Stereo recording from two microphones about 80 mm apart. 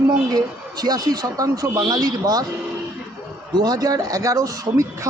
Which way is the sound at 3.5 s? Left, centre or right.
Right.